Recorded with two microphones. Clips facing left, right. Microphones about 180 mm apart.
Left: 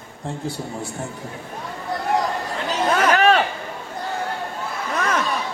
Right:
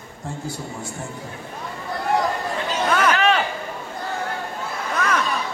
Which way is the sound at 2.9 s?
35° left (ahead or behind).